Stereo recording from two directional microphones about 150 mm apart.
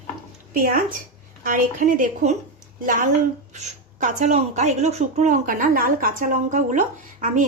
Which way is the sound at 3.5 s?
50° right (ahead or behind).